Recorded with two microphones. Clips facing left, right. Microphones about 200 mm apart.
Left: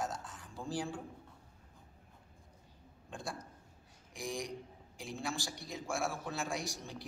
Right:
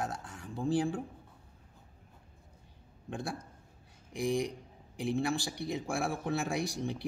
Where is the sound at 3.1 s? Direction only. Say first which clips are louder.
Right 6 dB; 60° right (ahead or behind).